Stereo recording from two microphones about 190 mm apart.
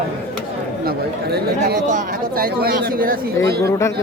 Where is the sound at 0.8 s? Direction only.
55° right (ahead or behind).